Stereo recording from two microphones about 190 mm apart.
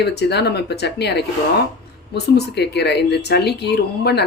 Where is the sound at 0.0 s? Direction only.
60° left (ahead or behind).